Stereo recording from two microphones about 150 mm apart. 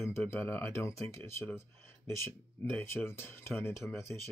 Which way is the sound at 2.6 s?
15° left (ahead or behind).